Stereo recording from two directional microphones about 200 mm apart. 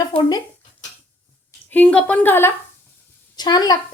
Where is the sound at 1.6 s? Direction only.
5° left (ahead or behind).